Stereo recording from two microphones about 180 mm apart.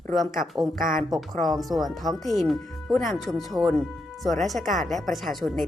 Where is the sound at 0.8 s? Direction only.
50° right (ahead or behind).